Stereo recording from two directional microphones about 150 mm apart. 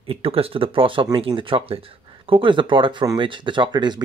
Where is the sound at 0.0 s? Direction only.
40° right (ahead or behind).